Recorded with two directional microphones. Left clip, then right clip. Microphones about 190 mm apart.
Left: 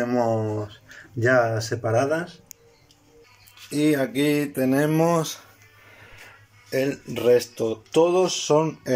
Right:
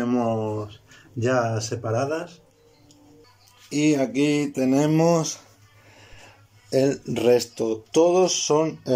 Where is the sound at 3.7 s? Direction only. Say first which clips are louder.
Even; 10° right (ahead or behind).